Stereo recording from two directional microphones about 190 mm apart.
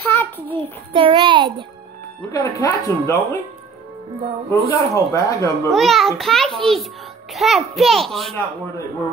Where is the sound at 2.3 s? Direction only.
15° left (ahead or behind).